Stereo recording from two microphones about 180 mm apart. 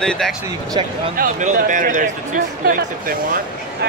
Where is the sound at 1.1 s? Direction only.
50° right (ahead or behind).